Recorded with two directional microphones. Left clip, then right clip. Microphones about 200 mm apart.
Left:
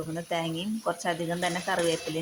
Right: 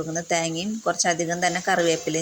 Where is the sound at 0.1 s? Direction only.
5° right (ahead or behind).